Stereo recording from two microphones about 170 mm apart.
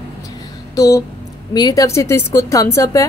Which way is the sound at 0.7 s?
20° left (ahead or behind).